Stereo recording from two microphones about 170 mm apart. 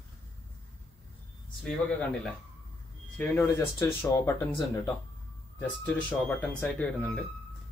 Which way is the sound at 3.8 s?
20° left (ahead or behind).